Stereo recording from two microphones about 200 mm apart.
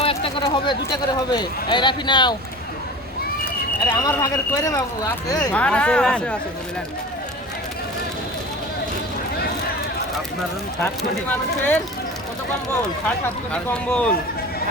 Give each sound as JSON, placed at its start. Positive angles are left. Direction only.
{"t": 0.0, "sound": "speech", "side_deg": 30}
{"t": 3.4, "sound": "speech", "side_deg": 10}
{"t": 11.3, "sound": "speech", "side_deg": 10}
{"t": 13.2, "sound": "speech", "side_deg": 10}